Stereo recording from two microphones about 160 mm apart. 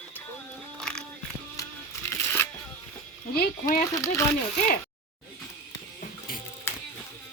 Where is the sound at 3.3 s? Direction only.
65° left (ahead or behind).